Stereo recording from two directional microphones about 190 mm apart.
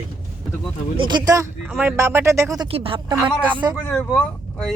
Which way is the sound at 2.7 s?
30° right (ahead or behind).